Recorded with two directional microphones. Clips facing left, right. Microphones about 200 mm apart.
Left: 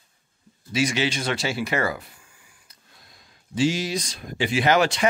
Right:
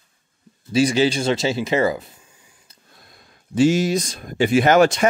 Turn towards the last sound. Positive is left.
turn(degrees=-50)  # may be behind; listen again after turning